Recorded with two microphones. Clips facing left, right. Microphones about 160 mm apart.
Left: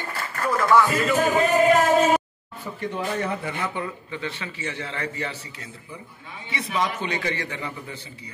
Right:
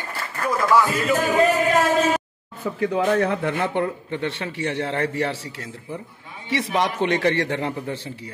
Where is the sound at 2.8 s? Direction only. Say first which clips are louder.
Right 8 dB; 90° right; by 5.4 s 70° right (ahead or behind).